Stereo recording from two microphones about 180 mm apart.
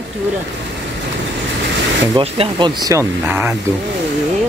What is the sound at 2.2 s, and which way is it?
Speech, 25° right (ahead or behind).